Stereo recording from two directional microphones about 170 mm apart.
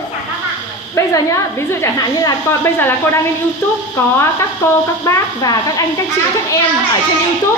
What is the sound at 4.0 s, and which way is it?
A woman's voice, 15° left (ahead or behind).